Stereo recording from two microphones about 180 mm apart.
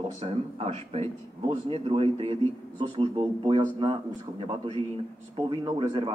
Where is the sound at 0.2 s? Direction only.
30° right (ahead or behind).